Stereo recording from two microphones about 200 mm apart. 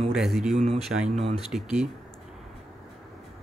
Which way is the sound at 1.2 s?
30° right (ahead or behind).